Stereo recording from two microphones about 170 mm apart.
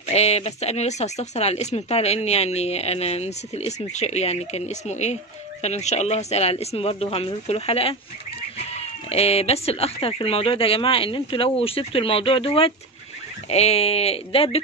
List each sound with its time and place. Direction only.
0.1 s speech: 40° left (ahead or behind)